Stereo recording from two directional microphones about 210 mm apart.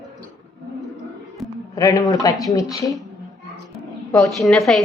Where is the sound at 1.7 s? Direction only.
15° left (ahead or behind).